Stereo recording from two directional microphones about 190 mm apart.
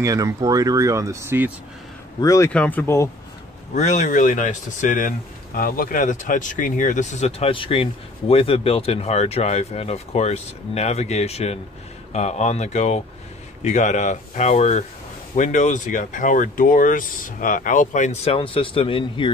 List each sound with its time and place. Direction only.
0.0 s speech: 15° right (ahead or behind)
2.1 s speech: 15° left (ahead or behind)
3.7 s speech: 40° left (ahead or behind)